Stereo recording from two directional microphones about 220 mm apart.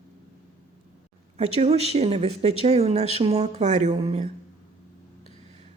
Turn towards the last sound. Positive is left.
turn(degrees=-30)  # may be behind; listen again after turning